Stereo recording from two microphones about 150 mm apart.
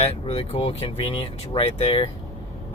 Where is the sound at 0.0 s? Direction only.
40° left (ahead or behind).